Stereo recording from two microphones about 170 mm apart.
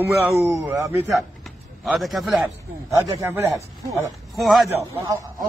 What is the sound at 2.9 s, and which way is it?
Speech, 20° right (ahead or behind).